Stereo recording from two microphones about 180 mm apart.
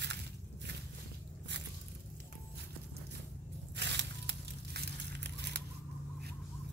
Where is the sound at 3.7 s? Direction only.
75° right (ahead or behind).